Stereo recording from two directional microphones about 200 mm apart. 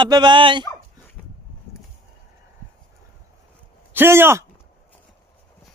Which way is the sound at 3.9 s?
10° right (ahead or behind).